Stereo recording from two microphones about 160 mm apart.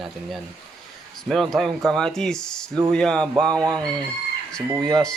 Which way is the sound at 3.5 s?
25° right (ahead or behind).